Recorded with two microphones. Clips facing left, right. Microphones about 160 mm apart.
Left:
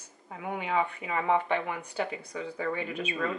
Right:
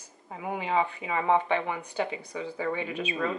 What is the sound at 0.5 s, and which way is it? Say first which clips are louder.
Speech: right 2 dB; 30° right (ahead or behind).